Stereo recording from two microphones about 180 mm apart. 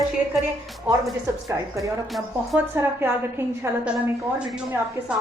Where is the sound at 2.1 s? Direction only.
Centre (ahead or behind).